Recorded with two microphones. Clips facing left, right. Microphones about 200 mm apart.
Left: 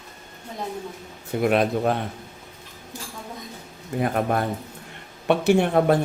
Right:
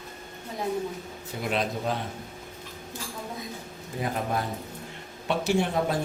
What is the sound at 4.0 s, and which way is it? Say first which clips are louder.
A man's voice: left 6 dB; 60° left (ahead or behind).